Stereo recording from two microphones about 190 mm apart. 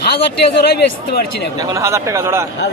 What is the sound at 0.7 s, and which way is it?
Speech, 55° left (ahead or behind).